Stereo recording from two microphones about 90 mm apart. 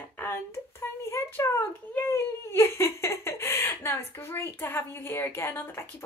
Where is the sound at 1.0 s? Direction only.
30° left (ahead or behind).